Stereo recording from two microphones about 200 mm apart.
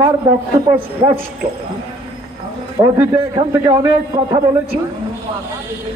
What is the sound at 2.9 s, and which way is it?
A man's voice, 15° right (ahead or behind).